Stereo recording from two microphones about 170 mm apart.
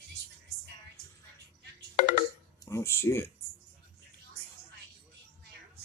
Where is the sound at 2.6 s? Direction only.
15° left (ahead or behind).